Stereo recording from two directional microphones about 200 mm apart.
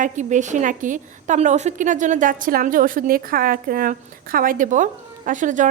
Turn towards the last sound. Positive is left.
turn(degrees=-40)  # may be behind; listen again after turning